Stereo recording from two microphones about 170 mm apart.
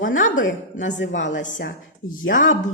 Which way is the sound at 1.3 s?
50° left (ahead or behind).